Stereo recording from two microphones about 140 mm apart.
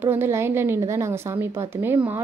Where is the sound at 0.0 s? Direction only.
15° right (ahead or behind).